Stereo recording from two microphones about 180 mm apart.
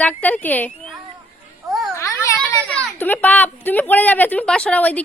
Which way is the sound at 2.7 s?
10° left (ahead or behind).